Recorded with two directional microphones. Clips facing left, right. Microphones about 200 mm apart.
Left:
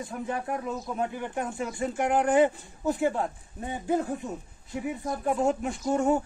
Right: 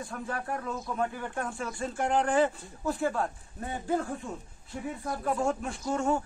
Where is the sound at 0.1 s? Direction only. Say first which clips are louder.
Left 4 dB; 20° left (ahead or behind).